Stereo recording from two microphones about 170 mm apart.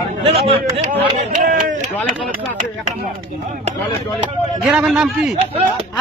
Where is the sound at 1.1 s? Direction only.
50° right (ahead or behind).